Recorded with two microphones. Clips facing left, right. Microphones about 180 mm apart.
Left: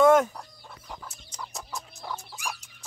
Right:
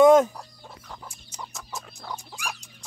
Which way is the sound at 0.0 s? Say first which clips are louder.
Right 4 dB; 20° right (ahead or behind).